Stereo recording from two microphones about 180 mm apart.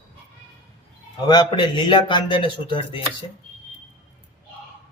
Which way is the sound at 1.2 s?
25° left (ahead or behind).